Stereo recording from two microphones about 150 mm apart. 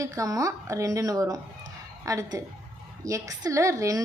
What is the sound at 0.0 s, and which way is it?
A woman's voice, 20° right (ahead or behind).